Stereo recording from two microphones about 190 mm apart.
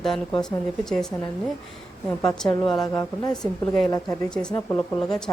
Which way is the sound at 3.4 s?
5° left (ahead or behind).